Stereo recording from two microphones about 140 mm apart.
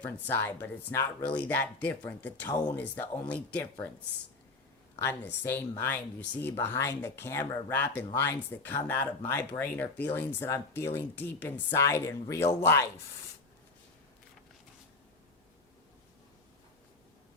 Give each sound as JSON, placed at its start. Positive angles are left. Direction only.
{"t": 0.0, "sound": "speech", "side_deg": 15}
{"t": 4.9, "sound": "speech", "side_deg": 15}